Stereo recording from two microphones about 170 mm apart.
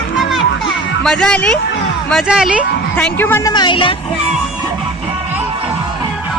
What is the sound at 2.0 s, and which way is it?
Speech, centre (ahead or behind).